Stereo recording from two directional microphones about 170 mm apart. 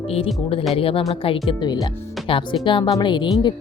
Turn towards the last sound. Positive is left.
turn(degrees=25)  # may be behind; listen again after turning